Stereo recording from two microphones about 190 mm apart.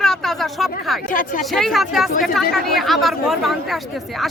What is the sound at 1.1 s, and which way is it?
Speech, 45° left (ahead or behind).